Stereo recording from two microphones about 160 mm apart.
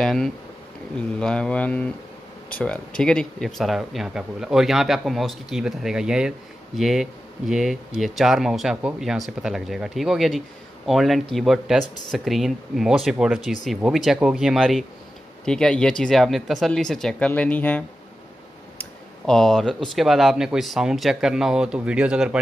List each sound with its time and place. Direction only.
0.0 s speech: 5° left (ahead or behind)
19.2 s speech: 5° left (ahead or behind)